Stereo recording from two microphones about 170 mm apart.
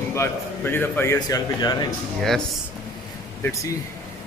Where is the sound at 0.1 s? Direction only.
15° left (ahead or behind).